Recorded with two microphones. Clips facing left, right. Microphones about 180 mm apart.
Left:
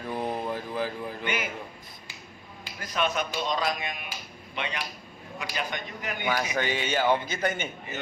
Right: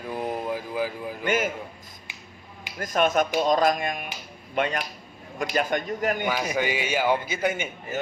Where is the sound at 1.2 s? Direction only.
45° right (ahead or behind).